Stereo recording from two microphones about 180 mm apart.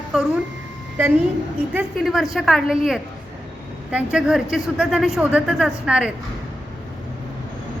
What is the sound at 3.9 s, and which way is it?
A man's voice, 5° right (ahead or behind).